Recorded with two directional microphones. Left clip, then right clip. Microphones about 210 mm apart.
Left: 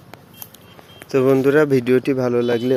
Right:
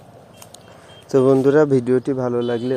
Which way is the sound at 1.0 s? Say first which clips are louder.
Right 1 dB; 10° right (ahead or behind).